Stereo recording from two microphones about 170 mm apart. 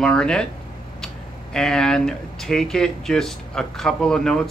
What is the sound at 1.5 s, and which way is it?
Speech, 5° left (ahead or behind).